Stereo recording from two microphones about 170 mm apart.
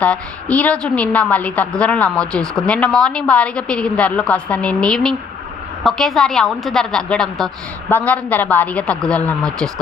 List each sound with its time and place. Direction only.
0.0 s a woman's voice: 5° left (ahead or behind)